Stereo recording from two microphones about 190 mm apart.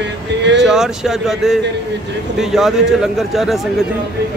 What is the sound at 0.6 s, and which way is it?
Speech, centre (ahead or behind).